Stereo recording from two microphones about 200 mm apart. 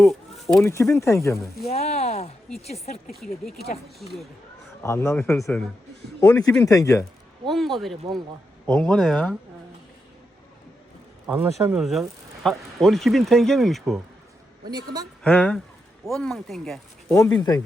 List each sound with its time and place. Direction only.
0.0 s bird: centre (ahead or behind)
0.6 s speech: 15° left (ahead or behind)
1.7 s speech: 30° left (ahead or behind)
3.8 s speech: centre (ahead or behind)
4.8 s speech: 15° left (ahead or behind)
7.4 s speech: centre (ahead or behind)
11.3 s speech: 10° right (ahead or behind)
11.8 s speech: centre (ahead or behind)
15.2 s speech: 5° left (ahead or behind)
17.1 s speech: 15° left (ahead or behind)